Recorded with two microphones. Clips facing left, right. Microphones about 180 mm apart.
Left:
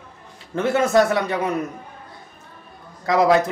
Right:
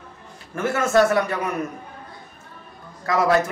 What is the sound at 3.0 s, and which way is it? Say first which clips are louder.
Speech: left 3 dB; 15° left (ahead or behind).